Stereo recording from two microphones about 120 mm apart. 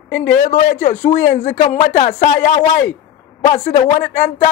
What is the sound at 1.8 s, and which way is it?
Speech, 85° left.